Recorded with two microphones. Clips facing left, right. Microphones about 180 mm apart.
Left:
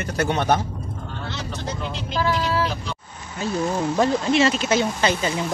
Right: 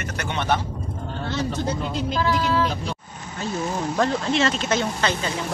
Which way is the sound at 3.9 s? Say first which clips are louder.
Left 2 dB; 10° left (ahead or behind).